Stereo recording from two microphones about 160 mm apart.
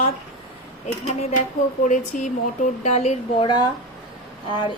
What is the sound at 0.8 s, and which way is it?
A woman's voice, 45° left (ahead or behind).